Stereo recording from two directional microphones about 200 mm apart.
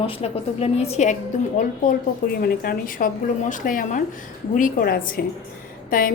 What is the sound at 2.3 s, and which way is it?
A woman's voice, 50° left (ahead or behind).